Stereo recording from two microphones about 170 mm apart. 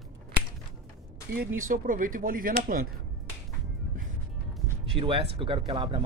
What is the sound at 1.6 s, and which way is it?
Speech, 50° right (ahead or behind).